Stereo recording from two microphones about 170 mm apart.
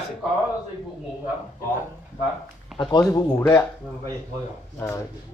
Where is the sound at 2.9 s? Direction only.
20° left (ahead or behind).